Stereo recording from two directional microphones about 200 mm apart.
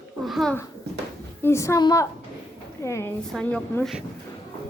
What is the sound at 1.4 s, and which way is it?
Speech, 15° left (ahead or behind).